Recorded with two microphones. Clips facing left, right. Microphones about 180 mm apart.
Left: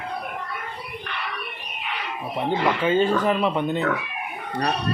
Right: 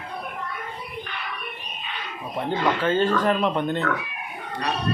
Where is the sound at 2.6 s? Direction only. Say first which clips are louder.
Left 1 dB; 10° left (ahead or behind).